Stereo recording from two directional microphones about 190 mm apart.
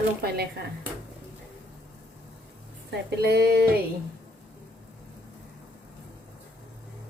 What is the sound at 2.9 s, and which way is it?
Speech, 60° right (ahead or behind).